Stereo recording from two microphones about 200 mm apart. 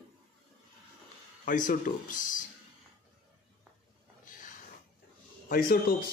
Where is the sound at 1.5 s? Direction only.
40° left (ahead or behind).